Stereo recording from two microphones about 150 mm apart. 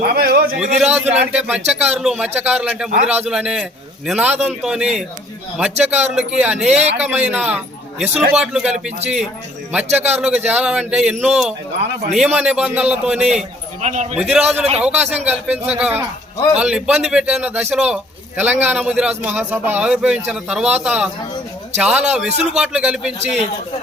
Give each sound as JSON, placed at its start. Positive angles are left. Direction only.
{"t": 0.1, "sound": "a sound", "side_deg": -90}
{"t": 0.8, "sound": "a man's voice", "side_deg": -10}
{"t": 6.7, "sound": "a man's voice", "side_deg": -45}
{"t": 7.0, "sound": "a man's voice", "side_deg": -10}
{"t": 13.8, "sound": "a man's voice", "side_deg": -50}
{"t": 14.2, "sound": "a man's voice", "side_deg": -5}